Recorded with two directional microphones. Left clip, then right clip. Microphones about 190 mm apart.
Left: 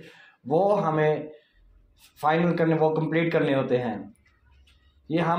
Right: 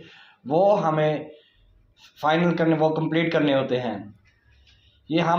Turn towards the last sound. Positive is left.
turn(degrees=45)  # may be behind; listen again after turning